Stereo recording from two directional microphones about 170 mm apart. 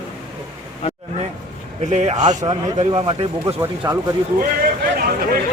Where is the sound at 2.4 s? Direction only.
20° right (ahead or behind).